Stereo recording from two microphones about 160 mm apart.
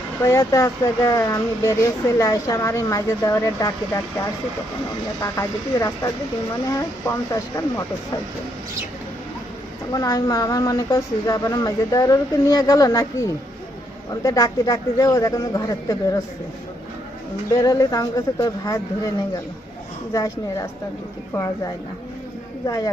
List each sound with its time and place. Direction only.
0.2 s speech: 20° left (ahead or behind)
5.2 s speech: 20° left (ahead or behind)
9.9 s speech: 20° left (ahead or behind)
17.5 s speech: 20° left (ahead or behind)
20.1 s speech: 20° left (ahead or behind)